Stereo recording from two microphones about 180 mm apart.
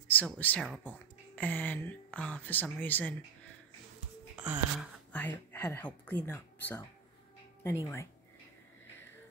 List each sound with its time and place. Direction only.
0.1 s speech: 10° left (ahead or behind)
4.4 s music: 5° right (ahead or behind)
5.1 s speech: 10° left (ahead or behind)